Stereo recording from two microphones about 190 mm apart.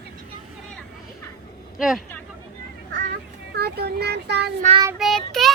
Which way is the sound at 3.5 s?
55° right (ahead or behind).